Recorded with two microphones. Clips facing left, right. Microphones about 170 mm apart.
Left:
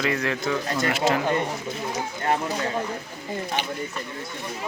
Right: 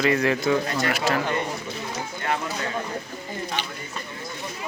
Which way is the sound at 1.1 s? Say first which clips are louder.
Left 2 dB; 20° left (ahead or behind).